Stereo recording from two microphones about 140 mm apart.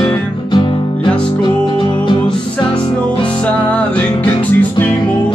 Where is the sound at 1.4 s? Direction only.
35° left (ahead or behind).